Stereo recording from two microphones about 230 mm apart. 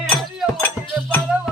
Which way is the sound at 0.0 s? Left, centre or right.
Centre.